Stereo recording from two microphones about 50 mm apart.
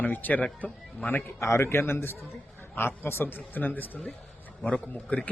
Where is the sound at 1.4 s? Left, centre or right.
Left.